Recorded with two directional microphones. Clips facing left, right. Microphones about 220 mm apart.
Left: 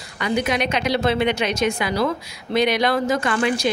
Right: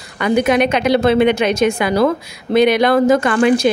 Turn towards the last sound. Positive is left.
turn(degrees=-55)  # may be behind; listen again after turning